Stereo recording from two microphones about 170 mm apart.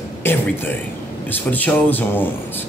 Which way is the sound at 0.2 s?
15° left (ahead or behind).